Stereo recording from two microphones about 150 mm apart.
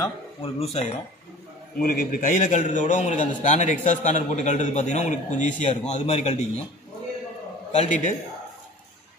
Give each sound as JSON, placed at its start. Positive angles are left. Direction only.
{"t": 0.4, "sound": "a man's voice", "side_deg": 45}
{"t": 1.8, "sound": "a man's voice", "side_deg": 75}
{"t": 7.7, "sound": "a man's voice", "side_deg": 50}